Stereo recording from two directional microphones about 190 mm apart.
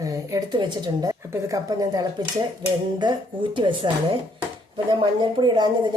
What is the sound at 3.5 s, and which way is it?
Speech, 25° right (ahead or behind).